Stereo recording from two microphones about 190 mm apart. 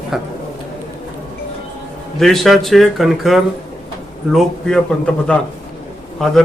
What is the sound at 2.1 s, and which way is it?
Speech, centre (ahead or behind).